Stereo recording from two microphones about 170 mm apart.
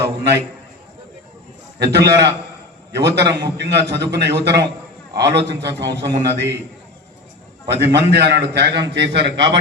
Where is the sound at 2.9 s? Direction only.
80° right.